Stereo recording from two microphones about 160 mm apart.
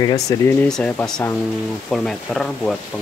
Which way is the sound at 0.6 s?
5° left (ahead or behind).